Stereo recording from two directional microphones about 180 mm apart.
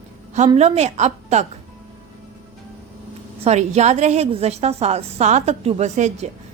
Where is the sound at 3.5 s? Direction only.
40° right (ahead or behind).